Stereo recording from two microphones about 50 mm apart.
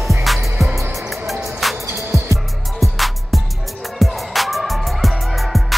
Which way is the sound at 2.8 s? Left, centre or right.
Centre.